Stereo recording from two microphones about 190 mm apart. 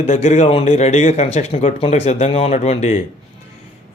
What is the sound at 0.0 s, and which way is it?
Speech, 35° left (ahead or behind).